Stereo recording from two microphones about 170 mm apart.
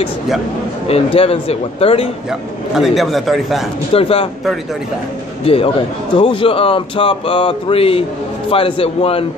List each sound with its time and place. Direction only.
0.8 s a man's voice: 35° left (ahead or behind)
2.7 s a man's voice: centre (ahead or behind)
3.9 s a man's voice: 35° left (ahead or behind)
5.5 s a man's voice: 35° left (ahead or behind)